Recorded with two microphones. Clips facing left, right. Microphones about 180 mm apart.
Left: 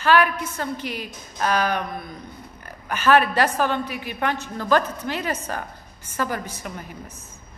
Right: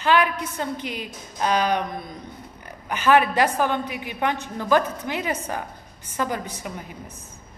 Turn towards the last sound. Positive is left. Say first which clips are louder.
# even
turn(degrees=-15)  # may be behind; listen again after turning